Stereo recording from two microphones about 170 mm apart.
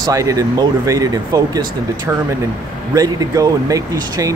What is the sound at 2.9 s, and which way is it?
Speech, 20° right (ahead or behind).